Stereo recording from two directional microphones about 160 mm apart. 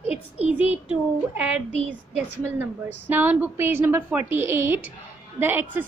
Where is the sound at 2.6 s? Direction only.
10° right (ahead or behind).